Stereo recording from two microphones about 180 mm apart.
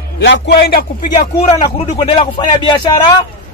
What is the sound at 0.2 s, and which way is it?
Speech, 90° left.